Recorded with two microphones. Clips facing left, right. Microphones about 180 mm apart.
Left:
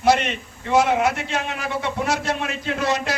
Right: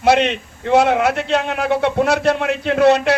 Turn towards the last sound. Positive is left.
turn(degrees=-65)  # may be behind; listen again after turning